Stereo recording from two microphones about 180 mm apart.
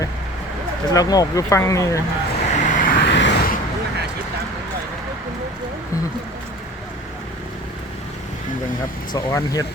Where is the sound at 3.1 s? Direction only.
80° left.